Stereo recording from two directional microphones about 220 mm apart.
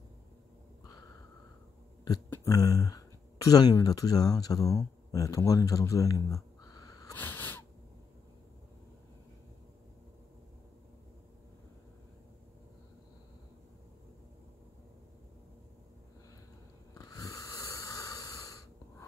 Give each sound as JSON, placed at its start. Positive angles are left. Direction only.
{"t": 2.0, "sound": "speech", "side_deg": 15}
{"t": 16.9, "sound": "snoring", "side_deg": 15}